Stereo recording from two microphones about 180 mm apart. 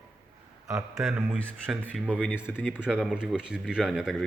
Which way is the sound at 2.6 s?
5° right (ahead or behind).